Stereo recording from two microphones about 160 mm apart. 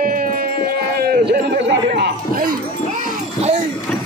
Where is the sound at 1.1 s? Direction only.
90° right.